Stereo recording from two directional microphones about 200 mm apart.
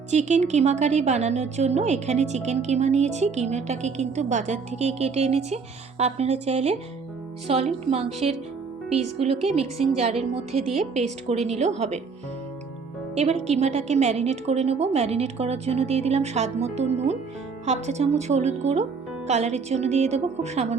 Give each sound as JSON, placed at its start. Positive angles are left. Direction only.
{"t": 0.1, "sound": "a woman's voice", "side_deg": -35}
{"t": 13.1, "sound": "a woman's voice", "side_deg": -35}